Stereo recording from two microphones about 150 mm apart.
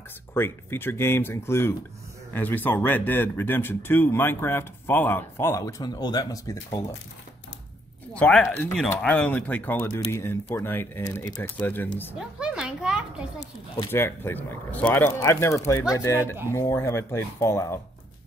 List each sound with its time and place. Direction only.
0.3 s speech: 15° left (ahead or behind)
8.1 s speech: 10° left (ahead or behind)
12.2 s a sound: 5° right (ahead or behind)
13.9 s speech: 15° left (ahead or behind)